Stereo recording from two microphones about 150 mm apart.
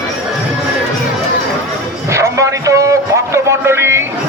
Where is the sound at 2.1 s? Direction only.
20° right (ahead or behind).